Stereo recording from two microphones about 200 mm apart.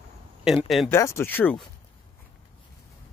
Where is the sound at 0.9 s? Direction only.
15° left (ahead or behind).